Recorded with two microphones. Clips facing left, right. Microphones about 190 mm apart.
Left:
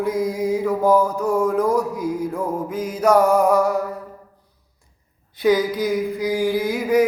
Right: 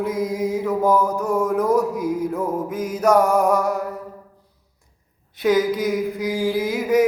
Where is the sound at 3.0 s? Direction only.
Centre (ahead or behind).